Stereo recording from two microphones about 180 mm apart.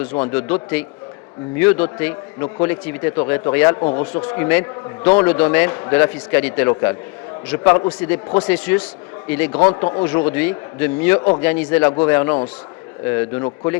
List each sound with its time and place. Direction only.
0.3 s a man's voice: 10° left (ahead or behind)